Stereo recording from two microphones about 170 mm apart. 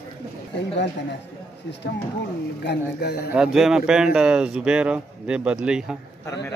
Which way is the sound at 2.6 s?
75° left (ahead or behind).